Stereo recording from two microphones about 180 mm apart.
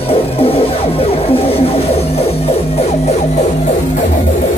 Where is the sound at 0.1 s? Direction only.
30° left (ahead or behind).